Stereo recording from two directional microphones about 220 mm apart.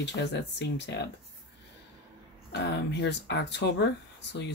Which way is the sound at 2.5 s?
50° left (ahead or behind).